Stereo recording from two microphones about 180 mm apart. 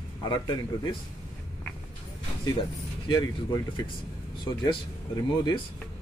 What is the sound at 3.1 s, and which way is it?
Speech, 20° left (ahead or behind).